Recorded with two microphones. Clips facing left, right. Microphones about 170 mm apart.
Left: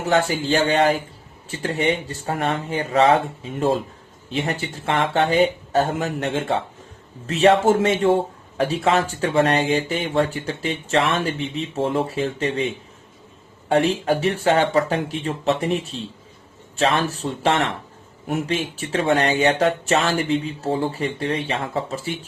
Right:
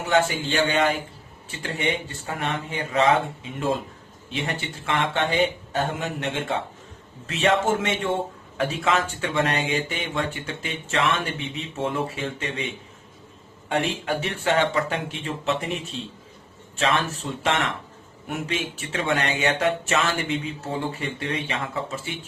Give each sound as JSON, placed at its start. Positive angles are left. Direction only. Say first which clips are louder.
{"t": 0.0, "sound": "speech", "louder": "left 2 dB", "side_deg": 40}
{"t": 2.2, "sound": "speech", "louder": "left 7 dB", "side_deg": 40}
{"t": 4.3, "sound": "speech", "louder": "left 5 dB", "side_deg": 35}
{"t": 13.7, "sound": "speech", "louder": "left 7 dB", "side_deg": 35}